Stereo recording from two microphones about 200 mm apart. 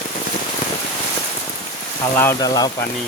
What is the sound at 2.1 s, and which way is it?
Speech, 15° left (ahead or behind).